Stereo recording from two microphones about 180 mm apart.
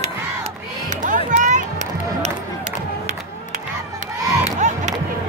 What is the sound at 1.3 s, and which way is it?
Run, 45° right (ahead or behind).